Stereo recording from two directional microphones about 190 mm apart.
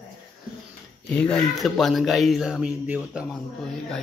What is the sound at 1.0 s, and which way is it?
Speech, 5° left (ahead or behind).